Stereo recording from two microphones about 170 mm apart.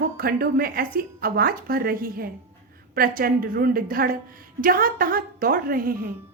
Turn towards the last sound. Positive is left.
turn(degrees=-60)  # may be behind; listen again after turning